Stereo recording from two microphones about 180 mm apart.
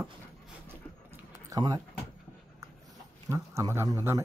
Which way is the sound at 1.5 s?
20° right (ahead or behind).